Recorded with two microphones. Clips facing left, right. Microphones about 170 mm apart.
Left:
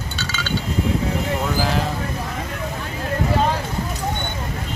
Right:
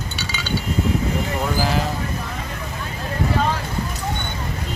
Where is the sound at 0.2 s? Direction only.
15° right (ahead or behind).